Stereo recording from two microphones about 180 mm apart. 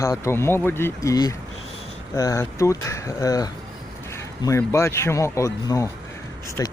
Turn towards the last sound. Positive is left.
turn(degrees=20)  # may be behind; listen again after turning